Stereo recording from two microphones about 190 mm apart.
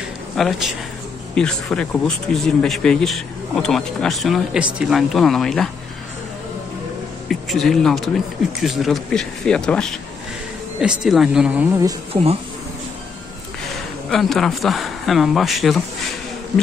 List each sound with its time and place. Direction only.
0.4 s speech: centre (ahead or behind)
7.2 s speech: centre (ahead or behind)
12.1 s speech: 30° right (ahead or behind)
14.1 s speech: centre (ahead or behind)